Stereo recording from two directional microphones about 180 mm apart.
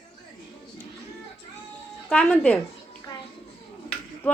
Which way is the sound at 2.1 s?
5° left (ahead or behind).